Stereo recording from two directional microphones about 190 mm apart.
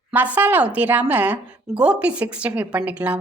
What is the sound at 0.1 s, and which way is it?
A woman's voice, 10° right (ahead or behind).